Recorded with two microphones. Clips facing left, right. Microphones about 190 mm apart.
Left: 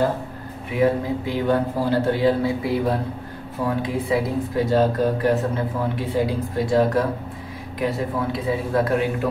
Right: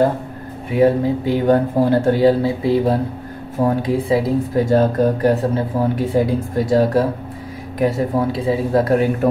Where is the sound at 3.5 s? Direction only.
40° right (ahead or behind).